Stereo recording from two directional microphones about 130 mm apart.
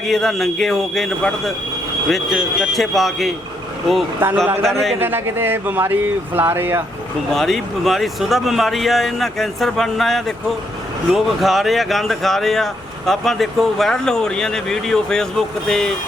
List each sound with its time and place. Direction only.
0.0 s speech: centre (ahead or behind)
4.2 s speech: 15° right (ahead or behind)
4.6 s speech: centre (ahead or behind)
4.9 s speech: 15° right (ahead or behind)
7.3 s speech: centre (ahead or behind)